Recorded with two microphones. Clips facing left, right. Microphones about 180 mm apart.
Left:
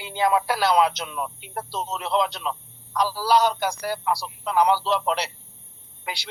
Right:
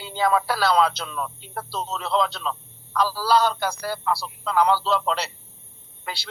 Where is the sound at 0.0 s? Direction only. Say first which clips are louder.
Even; 15° left (ahead or behind).